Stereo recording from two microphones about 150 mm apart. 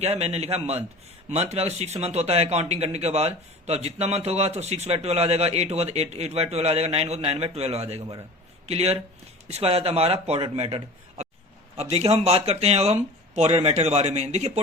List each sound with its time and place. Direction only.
0.0 s a man's voice: 45° right (ahead or behind)